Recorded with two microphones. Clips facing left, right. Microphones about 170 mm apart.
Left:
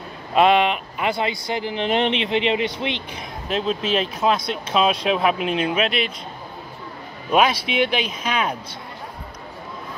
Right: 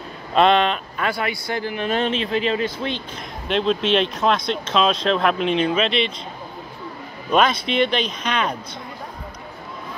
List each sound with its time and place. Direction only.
0.3 s speech: 10° left (ahead or behind)
3.4 s speech: 5° left (ahead or behind)
7.2 s speech: 10° left (ahead or behind)